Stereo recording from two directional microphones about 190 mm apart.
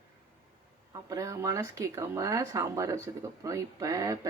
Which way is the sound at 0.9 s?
15° right (ahead or behind).